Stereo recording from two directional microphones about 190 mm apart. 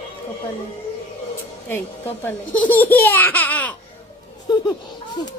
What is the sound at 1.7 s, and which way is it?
Speech, 10° left (ahead or behind).